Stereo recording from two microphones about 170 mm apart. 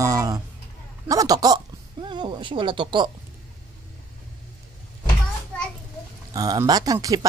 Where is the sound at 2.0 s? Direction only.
25° right (ahead or behind).